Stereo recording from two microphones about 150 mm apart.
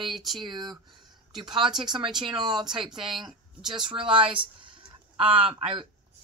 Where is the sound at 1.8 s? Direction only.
30° right (ahead or behind).